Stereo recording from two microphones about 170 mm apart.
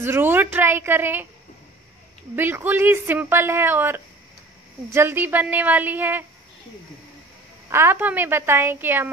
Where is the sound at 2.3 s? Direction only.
10° right (ahead or behind).